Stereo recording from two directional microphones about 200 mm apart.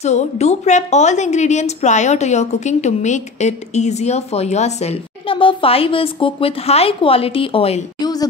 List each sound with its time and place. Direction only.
0.0 s a woman's voice: 35° left (ahead or behind)